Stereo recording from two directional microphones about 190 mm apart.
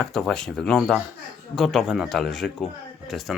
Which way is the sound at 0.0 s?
5° left (ahead or behind).